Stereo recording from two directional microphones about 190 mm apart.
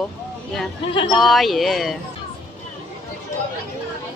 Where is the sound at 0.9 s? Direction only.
25° left (ahead or behind).